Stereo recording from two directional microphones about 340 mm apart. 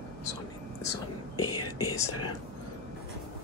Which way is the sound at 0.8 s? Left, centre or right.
Centre.